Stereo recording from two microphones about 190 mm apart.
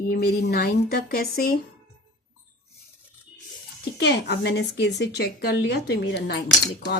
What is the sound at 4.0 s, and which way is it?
A woman's voice, 60° left (ahead or behind).